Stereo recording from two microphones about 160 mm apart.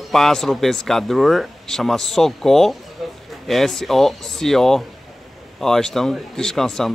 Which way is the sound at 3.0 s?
Centre (ahead or behind).